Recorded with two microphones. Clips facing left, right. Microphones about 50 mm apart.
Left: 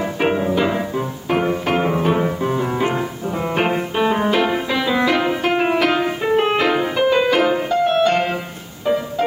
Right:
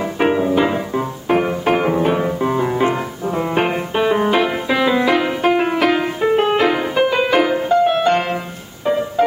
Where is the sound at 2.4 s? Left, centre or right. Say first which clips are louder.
Right 2 dB; centre.